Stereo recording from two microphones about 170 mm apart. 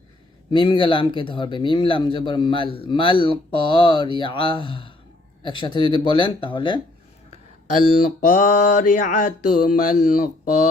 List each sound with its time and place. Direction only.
0.5 s speech: 30° left (ahead or behind)
8.3 s music: 50° left (ahead or behind)